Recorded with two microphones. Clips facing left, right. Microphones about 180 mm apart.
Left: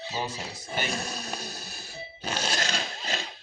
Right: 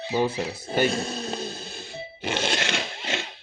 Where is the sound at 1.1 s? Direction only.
25° right (ahead or behind).